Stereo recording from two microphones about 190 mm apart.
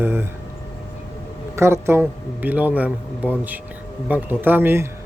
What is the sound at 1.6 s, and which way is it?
Speech, 15° right (ahead or behind).